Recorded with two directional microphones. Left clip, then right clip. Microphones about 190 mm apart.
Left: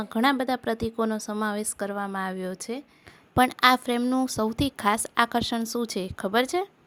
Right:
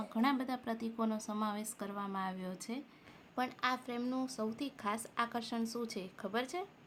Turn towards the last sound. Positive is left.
turn(degrees=45)  # may be behind; listen again after turning